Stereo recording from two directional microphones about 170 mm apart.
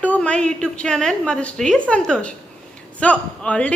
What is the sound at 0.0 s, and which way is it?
A man's voice, 10° left (ahead or behind).